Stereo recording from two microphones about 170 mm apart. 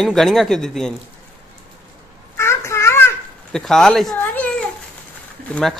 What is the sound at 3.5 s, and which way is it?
Speech, 5° left (ahead or behind).